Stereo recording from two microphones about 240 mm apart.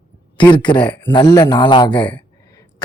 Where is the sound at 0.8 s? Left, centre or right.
Centre.